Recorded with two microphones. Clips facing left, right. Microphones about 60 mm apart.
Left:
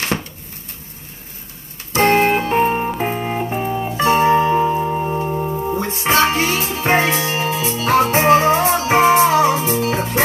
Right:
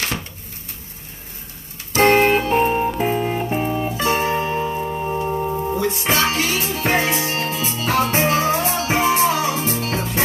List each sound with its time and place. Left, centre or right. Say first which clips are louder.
2.0 s music: even; centre
2.2 s music: even; centre
2.5 s music: left 1 dB; left
3.4 s music: even; centre
3.9 s music: left 9 dB; left
5.3 s music: left 1 dB; centre
5.8 s music: left 5 dB; left